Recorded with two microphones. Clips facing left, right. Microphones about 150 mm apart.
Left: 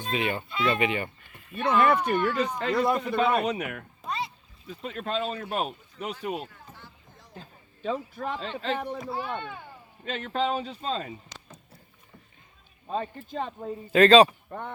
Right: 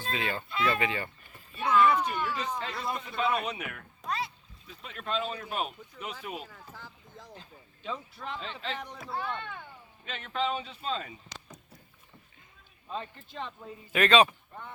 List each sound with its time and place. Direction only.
0.0 s speech: 20° left (ahead or behind)
1.5 s speech: 60° left (ahead or behind); by 3.8 s 45° left (ahead or behind)
4.0 s a sound: centre (ahead or behind)
4.7 s speech: 40° left (ahead or behind)
7.3 s a man's voice: 45° left (ahead or behind)
9.0 s speech: 5° left (ahead or behind)
10.0 s speech: 40° left (ahead or behind)
12.9 s speech: 45° left (ahead or behind)
14.5 s speech: 60° left (ahead or behind)